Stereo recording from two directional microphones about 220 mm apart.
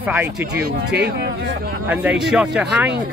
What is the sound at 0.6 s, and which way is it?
Speech, 45° right (ahead or behind).